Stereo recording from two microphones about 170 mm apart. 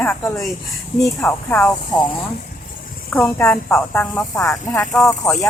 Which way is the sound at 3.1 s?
10° left (ahead or behind).